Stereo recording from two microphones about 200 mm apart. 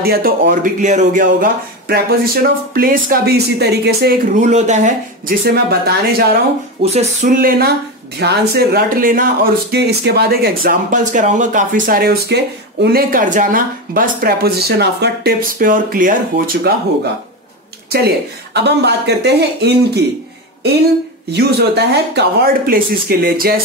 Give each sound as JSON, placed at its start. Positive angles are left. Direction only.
{"t": 0.0, "sound": "speech", "side_deg": -50}
{"t": 4.5, "sound": "speech", "side_deg": -35}
{"t": 5.4, "sound": "speech", "side_deg": -50}
{"t": 6.8, "sound": "speech", "side_deg": -30}
{"t": 17.9, "sound": "speech", "side_deg": -55}
{"t": 21.3, "sound": "speech", "side_deg": -55}